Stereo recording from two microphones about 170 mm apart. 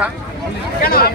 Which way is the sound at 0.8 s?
65° left (ahead or behind).